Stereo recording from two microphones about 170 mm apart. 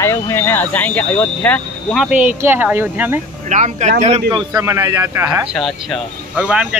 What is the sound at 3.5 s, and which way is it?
Speech, 45° right (ahead or behind).